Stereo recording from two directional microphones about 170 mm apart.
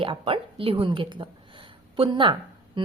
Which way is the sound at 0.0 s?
30° right (ahead or behind).